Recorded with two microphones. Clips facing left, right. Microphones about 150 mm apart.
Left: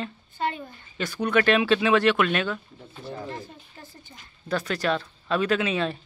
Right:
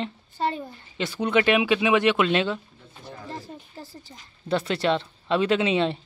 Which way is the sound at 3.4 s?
35° right (ahead or behind).